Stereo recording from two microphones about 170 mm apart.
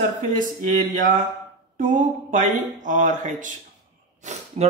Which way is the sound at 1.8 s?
50° right (ahead or behind).